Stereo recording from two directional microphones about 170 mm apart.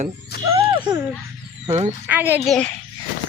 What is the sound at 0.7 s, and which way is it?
Babbling, 25° right (ahead or behind).